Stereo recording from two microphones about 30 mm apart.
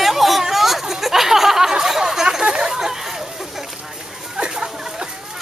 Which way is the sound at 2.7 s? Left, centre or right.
Centre.